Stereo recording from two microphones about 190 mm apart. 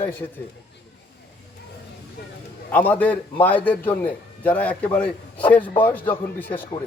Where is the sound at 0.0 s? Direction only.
10° left (ahead or behind).